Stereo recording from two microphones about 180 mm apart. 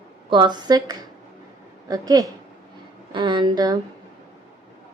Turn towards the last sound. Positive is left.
turn(degrees=-20)  # may be behind; listen again after turning